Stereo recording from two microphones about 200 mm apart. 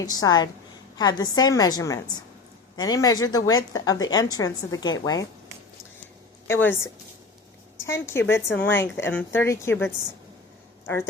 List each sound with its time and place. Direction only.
0.0 s a woman's voice: 20° left (ahead or behind)
6.5 s a woman's voice: 10° left (ahead or behind)
8.0 s a woman's voice: 10° left (ahead or behind)